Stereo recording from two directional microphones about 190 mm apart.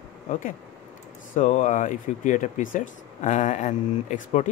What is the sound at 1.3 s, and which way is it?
Speech, 40° left (ahead or behind).